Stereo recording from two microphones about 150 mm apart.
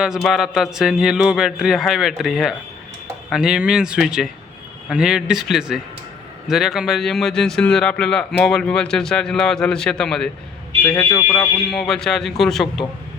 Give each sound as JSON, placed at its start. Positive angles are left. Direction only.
{"t": 0.0, "sound": "a man's voice", "side_deg": 0}
{"t": 11.1, "sound": "speech", "side_deg": 20}
{"t": 11.7, "sound": "a man's voice", "side_deg": 0}